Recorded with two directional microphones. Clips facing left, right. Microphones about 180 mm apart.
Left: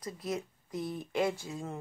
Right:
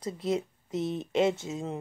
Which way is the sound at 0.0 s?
25° right (ahead or behind).